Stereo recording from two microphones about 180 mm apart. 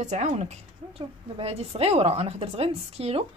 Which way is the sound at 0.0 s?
40° right (ahead or behind).